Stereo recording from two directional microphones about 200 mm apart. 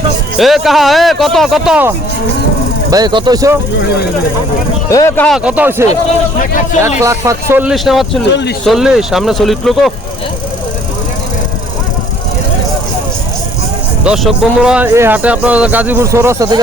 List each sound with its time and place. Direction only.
0.3 s a man's voice: centre (ahead or behind)
2.9 s speech: 20° right (ahead or behind)
4.9 s speech: 15° left (ahead or behind)
5.4 s speech: 5° right (ahead or behind)
7.0 s speech: 15° right (ahead or behind)
8.3 s speech: 60° left (ahead or behind)
8.6 s a man's voice: centre (ahead or behind)
14.0 s speech: 5° right (ahead or behind)